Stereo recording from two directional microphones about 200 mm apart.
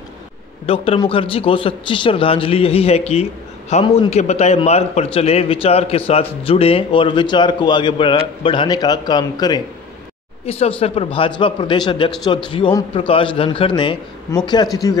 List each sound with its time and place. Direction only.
0.7 s a man's voice: 25° left (ahead or behind)